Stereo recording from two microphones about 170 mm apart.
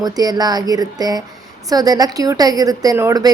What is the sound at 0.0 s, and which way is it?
A woman's voice, 25° right (ahead or behind).